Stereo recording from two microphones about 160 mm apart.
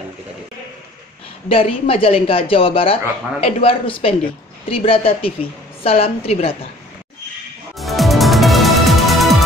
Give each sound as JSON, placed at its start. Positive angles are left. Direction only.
{"t": 1.5, "sound": "speech", "side_deg": 35}
{"t": 7.7, "sound": "music", "side_deg": 0}